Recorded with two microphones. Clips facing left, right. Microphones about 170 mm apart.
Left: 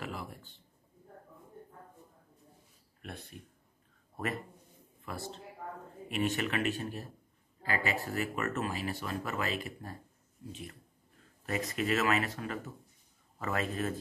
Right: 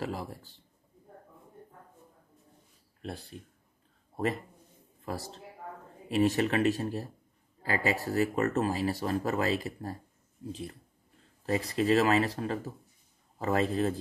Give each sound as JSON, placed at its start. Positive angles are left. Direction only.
{"t": 0.0, "sound": "speech", "side_deg": -35}
{"t": 3.0, "sound": "speech", "side_deg": -30}
{"t": 5.0, "sound": "a man's voice", "side_deg": -40}